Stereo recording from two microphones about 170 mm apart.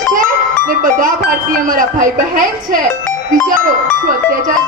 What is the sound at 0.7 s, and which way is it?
Music, 55° right (ahead or behind).